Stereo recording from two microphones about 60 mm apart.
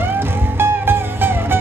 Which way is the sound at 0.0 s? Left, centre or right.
Right.